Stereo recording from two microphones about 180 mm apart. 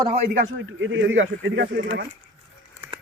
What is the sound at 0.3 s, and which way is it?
Speech, 90° right.